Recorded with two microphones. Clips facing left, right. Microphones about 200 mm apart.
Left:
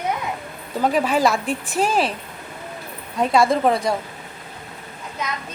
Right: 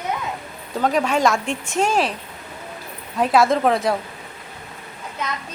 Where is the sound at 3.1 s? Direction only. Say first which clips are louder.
Right 1 dB; centre (ahead or behind).